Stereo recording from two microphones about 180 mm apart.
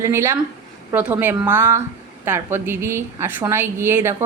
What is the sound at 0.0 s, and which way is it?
Speech, 15° right (ahead or behind).